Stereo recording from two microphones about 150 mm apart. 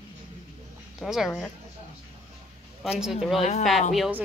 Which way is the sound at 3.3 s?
45° left (ahead or behind).